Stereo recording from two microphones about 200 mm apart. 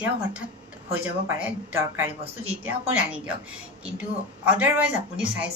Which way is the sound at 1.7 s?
10° right (ahead or behind).